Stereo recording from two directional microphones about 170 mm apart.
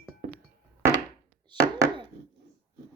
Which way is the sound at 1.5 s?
25° right (ahead or behind).